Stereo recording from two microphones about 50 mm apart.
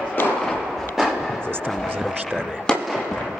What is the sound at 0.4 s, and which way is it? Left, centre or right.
Fireworks, centre.